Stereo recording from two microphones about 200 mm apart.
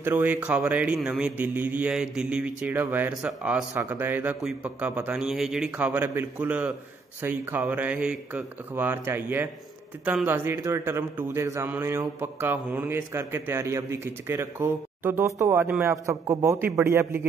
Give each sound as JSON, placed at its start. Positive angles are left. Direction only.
{"t": 0.0, "sound": "a man's voice", "side_deg": -10}